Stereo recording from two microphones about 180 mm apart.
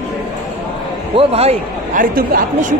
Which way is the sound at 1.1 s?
35° right (ahead or behind).